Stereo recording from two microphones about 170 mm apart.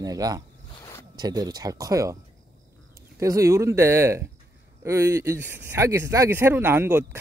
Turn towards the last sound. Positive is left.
turn(degrees=-15)  # may be behind; listen again after turning